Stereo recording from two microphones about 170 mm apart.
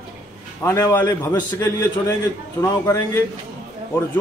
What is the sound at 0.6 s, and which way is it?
A man's voice, 15° left (ahead or behind).